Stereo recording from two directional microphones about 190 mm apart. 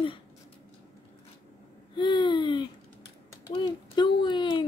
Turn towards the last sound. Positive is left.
turn(degrees=25)  # may be behind; listen again after turning